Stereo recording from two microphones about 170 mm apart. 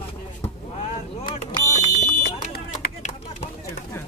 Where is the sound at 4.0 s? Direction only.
15° left (ahead or behind).